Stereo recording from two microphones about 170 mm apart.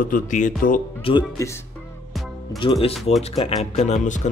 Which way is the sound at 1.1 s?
30° left (ahead or behind).